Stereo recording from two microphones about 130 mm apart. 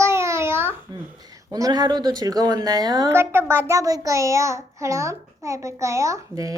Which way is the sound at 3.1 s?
20° right (ahead or behind).